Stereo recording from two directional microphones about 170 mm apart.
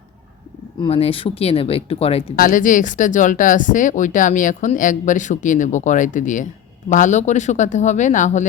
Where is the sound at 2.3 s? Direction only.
55° left (ahead or behind).